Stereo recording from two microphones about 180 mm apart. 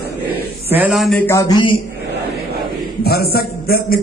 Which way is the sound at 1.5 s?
25° left (ahead or behind).